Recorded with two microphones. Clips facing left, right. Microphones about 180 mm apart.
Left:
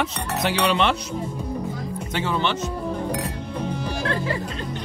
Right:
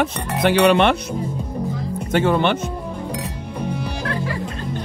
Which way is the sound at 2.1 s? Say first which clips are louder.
Right 7 dB; 55° right (ahead or behind).